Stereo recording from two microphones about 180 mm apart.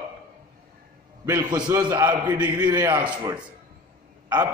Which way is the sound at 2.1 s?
10° right (ahead or behind).